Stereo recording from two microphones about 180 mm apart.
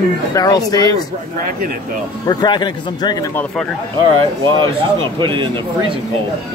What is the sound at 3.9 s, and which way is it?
Speech, 25° right (ahead or behind).